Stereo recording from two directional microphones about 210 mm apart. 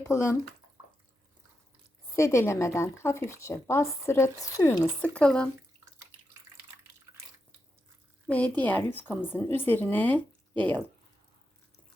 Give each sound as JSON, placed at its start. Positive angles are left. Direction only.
{"t": 0.1, "sound": "a woman's voice", "side_deg": 15}
{"t": 2.1, "sound": "a woman's voice", "side_deg": 15}
{"t": 8.3, "sound": "a woman's voice", "side_deg": 5}